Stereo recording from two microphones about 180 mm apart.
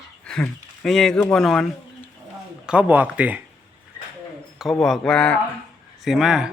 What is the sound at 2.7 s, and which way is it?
Speech, 10° right (ahead or behind).